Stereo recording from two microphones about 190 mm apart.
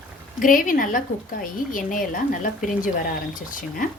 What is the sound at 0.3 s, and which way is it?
Speech, 45° left (ahead or behind).